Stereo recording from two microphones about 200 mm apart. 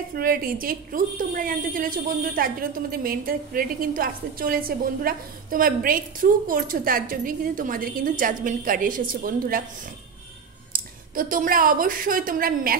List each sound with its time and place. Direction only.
0.1 s a woman's voice: 45° right (ahead or behind)
10.7 s a woman's voice: 45° right (ahead or behind)